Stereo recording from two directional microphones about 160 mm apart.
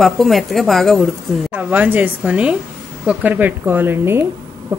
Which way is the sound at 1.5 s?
10° right (ahead or behind).